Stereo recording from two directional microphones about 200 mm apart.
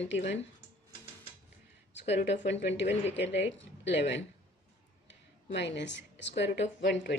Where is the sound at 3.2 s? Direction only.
65° left (ahead or behind).